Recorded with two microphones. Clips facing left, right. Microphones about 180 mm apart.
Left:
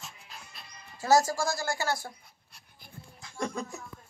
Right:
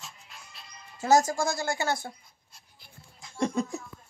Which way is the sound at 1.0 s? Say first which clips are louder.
Right 1 dB; 20° right (ahead or behind).